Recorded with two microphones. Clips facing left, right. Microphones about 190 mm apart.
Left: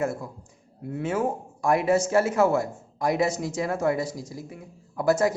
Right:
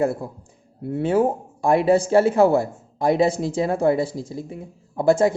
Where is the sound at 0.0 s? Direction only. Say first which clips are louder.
Right 6 dB; 35° right (ahead or behind).